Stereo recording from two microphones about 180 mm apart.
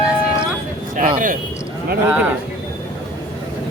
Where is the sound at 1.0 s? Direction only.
45° right (ahead or behind).